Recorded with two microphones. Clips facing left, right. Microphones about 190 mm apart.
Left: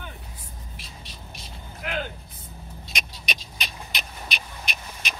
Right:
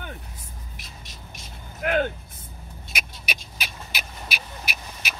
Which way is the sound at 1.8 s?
55° right (ahead or behind).